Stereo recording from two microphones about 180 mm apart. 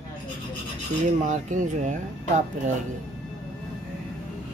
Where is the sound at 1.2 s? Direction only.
45° right (ahead or behind).